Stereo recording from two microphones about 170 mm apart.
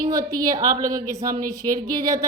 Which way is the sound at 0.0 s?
20° right (ahead or behind).